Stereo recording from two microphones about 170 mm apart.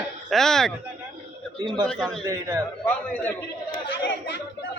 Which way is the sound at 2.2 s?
15° right (ahead or behind).